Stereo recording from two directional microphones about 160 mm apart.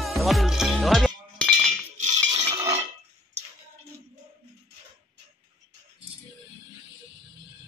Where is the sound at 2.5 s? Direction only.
20° right (ahead or behind).